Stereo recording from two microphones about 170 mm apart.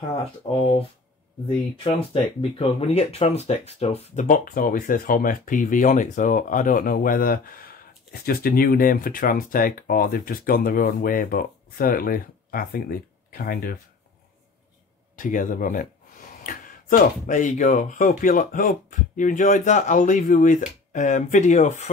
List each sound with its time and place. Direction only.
0.5 s speech: 35° left (ahead or behind)
2.6 s speech: 35° left (ahead or behind); by 13.7 s 60° left (ahead or behind)
15.1 s speech: 50° left (ahead or behind)